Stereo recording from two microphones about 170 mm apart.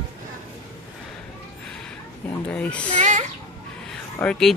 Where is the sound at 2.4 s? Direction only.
5° left (ahead or behind).